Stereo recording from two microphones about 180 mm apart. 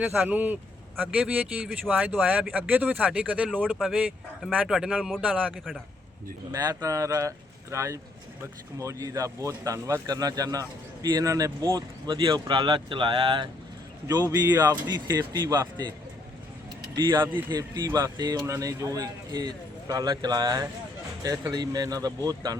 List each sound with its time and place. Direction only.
0.0 s speech: 10° right (ahead or behind)
6.5 s speech: 20° right (ahead or behind)
17.3 s speech: 20° right (ahead or behind)